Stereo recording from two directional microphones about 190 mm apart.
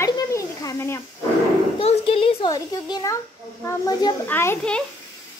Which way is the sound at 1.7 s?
30° left (ahead or behind).